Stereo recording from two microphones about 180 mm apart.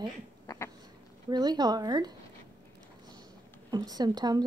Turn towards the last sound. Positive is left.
turn(degrees=-20)  # may be behind; listen again after turning